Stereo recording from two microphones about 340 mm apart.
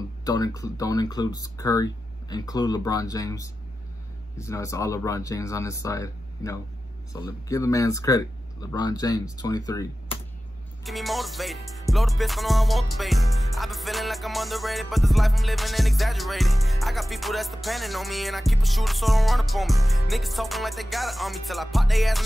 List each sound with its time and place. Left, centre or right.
0.2 s speech: centre
10.8 s music: centre